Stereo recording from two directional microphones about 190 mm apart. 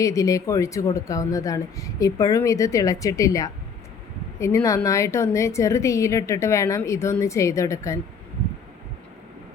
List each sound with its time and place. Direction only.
0.0 s a woman's voice: 15° left (ahead or behind)